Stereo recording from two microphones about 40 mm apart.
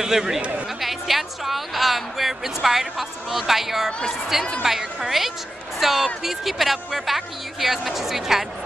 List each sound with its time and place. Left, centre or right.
0.0 s a woman's voice: centre
0.4 s speech: right
0.7 s a woman's voice: centre